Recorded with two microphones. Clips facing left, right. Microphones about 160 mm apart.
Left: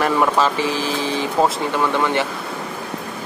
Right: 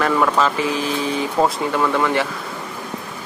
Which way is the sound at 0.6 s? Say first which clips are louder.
Even; 30° left (ahead or behind).